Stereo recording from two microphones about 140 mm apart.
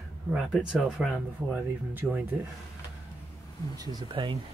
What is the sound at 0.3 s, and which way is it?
Speech, 5° right (ahead or behind).